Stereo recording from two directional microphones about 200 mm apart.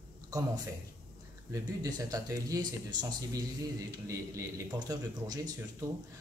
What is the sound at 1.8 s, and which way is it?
Speech, 20° right (ahead or behind).